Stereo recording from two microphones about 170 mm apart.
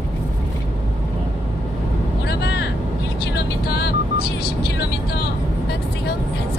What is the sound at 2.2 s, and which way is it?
Vehicle, 80° left.